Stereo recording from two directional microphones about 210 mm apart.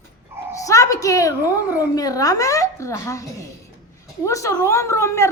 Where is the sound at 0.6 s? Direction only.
15° left (ahead or behind).